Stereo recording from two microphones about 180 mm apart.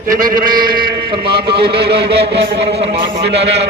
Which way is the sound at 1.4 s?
65° right (ahead or behind).